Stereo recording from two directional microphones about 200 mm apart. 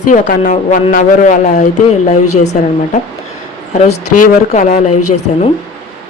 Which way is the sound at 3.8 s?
35° left (ahead or behind).